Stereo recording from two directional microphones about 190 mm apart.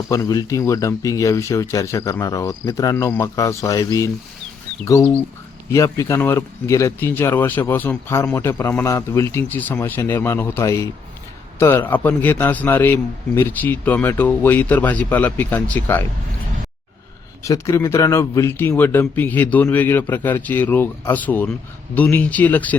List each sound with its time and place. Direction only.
0.1 s speech: 20° left (ahead or behind)
17.4 s speech: 15° left (ahead or behind)